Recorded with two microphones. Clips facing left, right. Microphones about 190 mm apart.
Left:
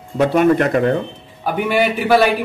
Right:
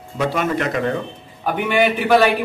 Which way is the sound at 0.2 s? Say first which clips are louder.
Left 7 dB; 55° left (ahead or behind).